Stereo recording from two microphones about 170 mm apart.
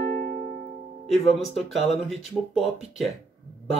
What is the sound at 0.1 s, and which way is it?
Music, 45° right (ahead or behind).